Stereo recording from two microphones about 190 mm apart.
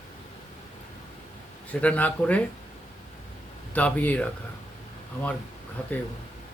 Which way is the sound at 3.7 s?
5° left (ahead or behind).